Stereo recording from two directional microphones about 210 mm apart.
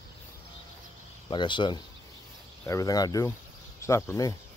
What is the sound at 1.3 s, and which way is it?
Speech, 20° left (ahead or behind).